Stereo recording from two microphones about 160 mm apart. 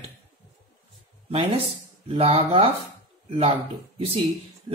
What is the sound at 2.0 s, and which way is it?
Speech, 40° right (ahead or behind).